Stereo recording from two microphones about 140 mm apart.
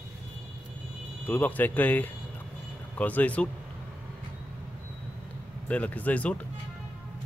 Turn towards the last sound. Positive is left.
turn(degrees=10)  # may be behind; listen again after turning